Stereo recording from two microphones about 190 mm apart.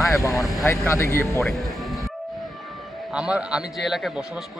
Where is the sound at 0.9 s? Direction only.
15° left (ahead or behind).